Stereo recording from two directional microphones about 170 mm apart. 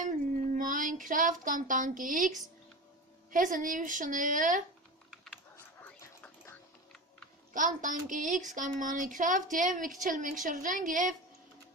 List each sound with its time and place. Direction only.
0.0 s child singing: 50° right (ahead or behind)
3.3 s a woman's voice: 50° right (ahead or behind)
5.8 s a sound: 10° left (ahead or behind)
7.5 s a woman's voice: 50° right (ahead or behind)